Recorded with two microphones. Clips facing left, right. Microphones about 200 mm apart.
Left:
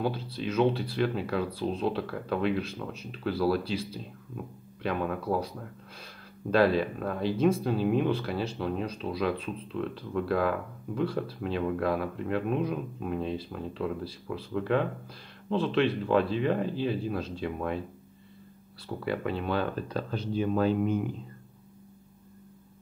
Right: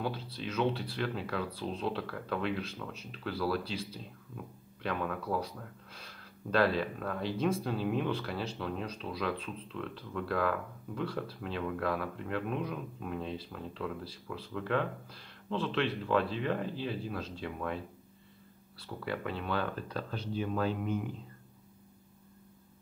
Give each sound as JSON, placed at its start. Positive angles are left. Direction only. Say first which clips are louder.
{"t": 0.0, "sound": "speech", "louder": "left 6 dB", "side_deg": 10}
{"t": 6.5, "sound": "speech", "louder": "left 5 dB", "side_deg": 15}
{"t": 19.0, "sound": "speech", "louder": "left 5 dB", "side_deg": 20}